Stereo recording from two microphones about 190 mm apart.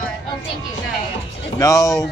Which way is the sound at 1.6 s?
15° left (ahead or behind).